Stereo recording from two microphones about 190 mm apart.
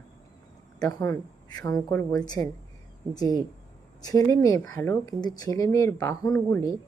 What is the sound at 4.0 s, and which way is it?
Speech, 20° left (ahead or behind).